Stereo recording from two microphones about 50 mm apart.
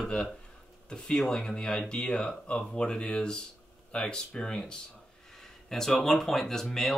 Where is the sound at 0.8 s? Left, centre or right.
Centre.